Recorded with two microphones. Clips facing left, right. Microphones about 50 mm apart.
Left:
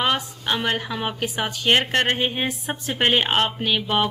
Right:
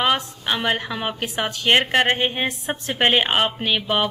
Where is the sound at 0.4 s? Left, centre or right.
Centre.